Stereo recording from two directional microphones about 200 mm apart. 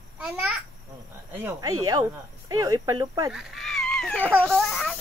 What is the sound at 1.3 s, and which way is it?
Speech, 10° right (ahead or behind).